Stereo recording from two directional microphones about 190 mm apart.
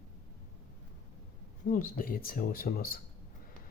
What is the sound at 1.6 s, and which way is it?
Speech, 50° left (ahead or behind).